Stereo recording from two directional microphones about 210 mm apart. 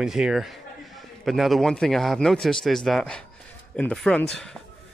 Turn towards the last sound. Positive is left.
turn(degrees=5)  # may be behind; listen again after turning